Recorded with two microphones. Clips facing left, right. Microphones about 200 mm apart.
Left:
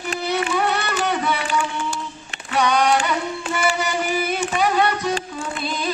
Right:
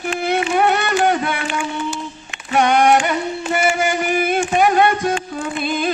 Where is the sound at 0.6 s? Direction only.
55° right (ahead or behind).